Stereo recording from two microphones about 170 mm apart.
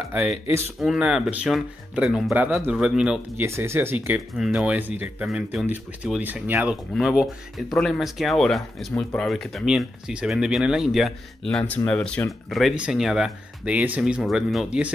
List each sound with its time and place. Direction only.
0.0 s speech: 5° right (ahead or behind)
3.4 s speech: 15° right (ahead or behind)